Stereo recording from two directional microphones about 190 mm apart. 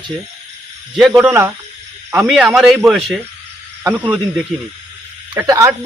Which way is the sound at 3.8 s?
15° right (ahead or behind).